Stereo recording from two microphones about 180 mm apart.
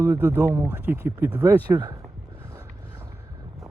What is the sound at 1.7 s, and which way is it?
Speech, 25° right (ahead or behind).